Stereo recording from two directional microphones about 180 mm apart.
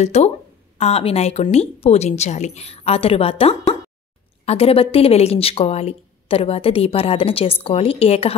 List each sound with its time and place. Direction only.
0.0 s speech: 40° left (ahead or behind)